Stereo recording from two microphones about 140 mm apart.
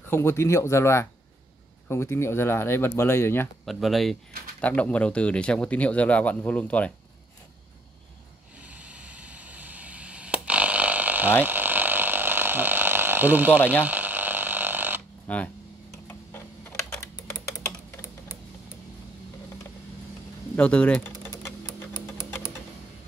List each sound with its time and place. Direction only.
0.1 s speech: 20° left (ahead or behind)
3.6 s speech: centre (ahead or behind)
8.6 s arrow: 10° right (ahead or behind)
11.4 s ratchet: 15° right (ahead or behind)
13.8 s a sound: 10° right (ahead or behind)
15.2 s speech: 10° left (ahead or behind)
16.1 s a sound: 15° left (ahead or behind)
20.5 s speech: 10° left (ahead or behind)